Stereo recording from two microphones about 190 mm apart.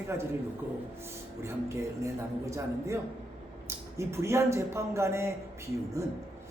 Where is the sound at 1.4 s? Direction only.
15° right (ahead or behind).